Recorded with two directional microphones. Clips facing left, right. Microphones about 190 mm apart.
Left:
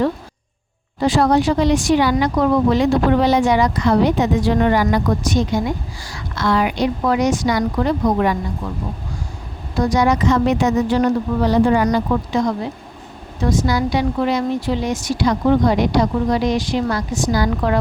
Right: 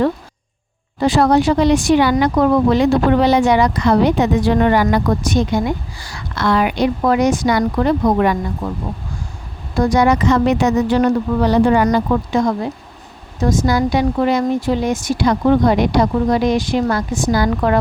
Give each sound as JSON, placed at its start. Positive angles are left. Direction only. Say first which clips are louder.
{"t": 1.0, "sound": "speech", "louder": "right 2 dB", "side_deg": -60}
{"t": 9.7, "sound": "speech", "louder": "right 3 dB", "side_deg": -55}